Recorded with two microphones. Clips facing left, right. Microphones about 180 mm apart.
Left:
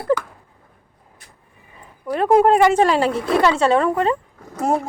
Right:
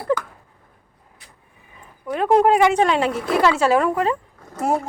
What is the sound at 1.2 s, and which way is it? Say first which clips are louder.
Vehicle: even; 45° left (ahead or behind).